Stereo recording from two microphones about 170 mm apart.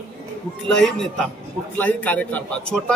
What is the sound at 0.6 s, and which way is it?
A man's voice, 5° left (ahead or behind).